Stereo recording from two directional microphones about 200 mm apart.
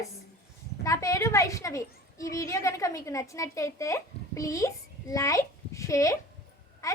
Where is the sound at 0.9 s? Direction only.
15° left (ahead or behind).